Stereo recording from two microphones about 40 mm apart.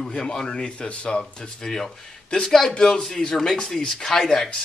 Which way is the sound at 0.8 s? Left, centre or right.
Left.